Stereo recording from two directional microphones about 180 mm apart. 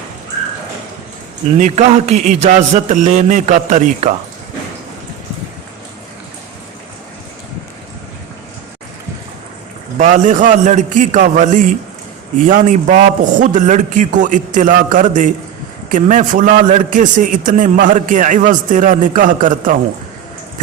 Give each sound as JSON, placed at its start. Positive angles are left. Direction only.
{"t": 1.5, "sound": "a man's voice", "side_deg": -40}
{"t": 10.0, "sound": "a man's voice", "side_deg": -45}